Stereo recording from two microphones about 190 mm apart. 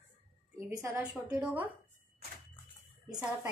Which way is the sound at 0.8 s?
10° right (ahead or behind).